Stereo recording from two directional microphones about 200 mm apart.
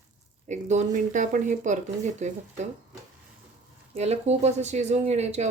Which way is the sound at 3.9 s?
35° right (ahead or behind).